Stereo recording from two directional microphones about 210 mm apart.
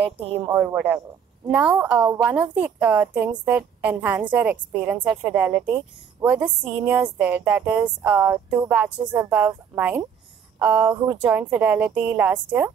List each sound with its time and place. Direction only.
0.0 s a woman's voice: 25° right (ahead or behind)
0.5 s a woman's voice: 10° right (ahead or behind)